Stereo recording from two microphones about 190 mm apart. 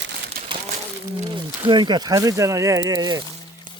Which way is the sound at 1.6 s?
25° right (ahead or behind).